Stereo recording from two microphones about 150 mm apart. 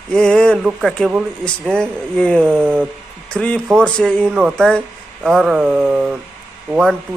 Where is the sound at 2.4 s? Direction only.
15° right (ahead or behind).